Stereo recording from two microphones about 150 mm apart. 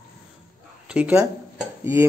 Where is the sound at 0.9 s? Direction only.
10° right (ahead or behind).